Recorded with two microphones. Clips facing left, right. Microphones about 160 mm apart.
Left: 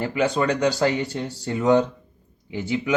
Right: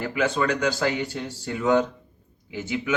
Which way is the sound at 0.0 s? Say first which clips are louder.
Left 2 dB; 35° left (ahead or behind).